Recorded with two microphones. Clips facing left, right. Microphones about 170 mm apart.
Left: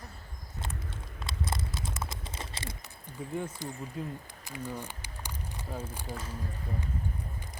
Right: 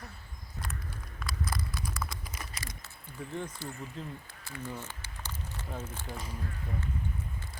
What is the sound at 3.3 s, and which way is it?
Speech, 10° left (ahead or behind).